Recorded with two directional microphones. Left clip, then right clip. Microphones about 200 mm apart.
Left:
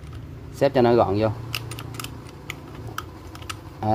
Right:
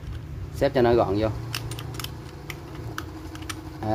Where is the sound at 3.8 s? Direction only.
25° left (ahead or behind).